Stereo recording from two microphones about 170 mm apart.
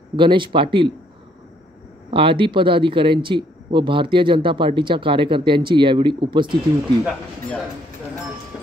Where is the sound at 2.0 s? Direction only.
30° right (ahead or behind).